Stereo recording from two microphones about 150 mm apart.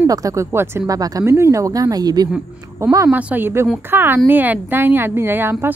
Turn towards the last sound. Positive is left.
turn(degrees=-15)  # may be behind; listen again after turning